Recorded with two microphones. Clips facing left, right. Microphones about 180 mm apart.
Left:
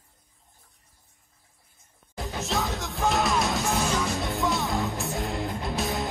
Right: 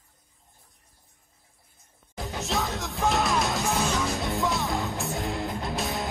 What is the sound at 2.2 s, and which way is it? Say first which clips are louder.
Music: even; centre (ahead or behind).